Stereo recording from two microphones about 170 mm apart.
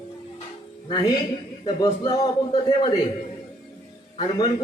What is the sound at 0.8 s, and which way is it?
A man's voice, 30° left (ahead or behind).